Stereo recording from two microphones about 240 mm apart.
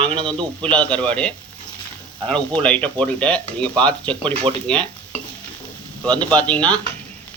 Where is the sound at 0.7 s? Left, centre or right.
Centre.